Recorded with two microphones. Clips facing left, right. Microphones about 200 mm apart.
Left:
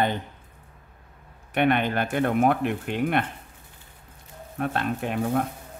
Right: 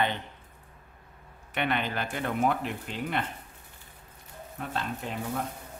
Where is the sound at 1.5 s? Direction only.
55° left (ahead or behind).